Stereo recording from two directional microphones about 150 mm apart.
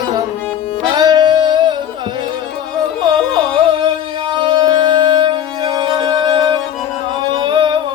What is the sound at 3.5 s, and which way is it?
Music, 35° right (ahead or behind).